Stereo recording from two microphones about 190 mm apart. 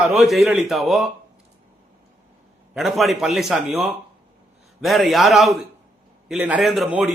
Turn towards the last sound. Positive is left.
turn(degrees=-5)  # may be behind; listen again after turning